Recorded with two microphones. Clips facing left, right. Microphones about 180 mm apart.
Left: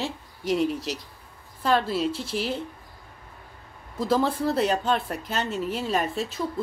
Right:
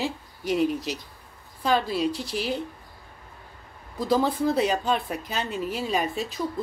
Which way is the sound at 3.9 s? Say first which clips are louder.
Even; centre (ahead or behind).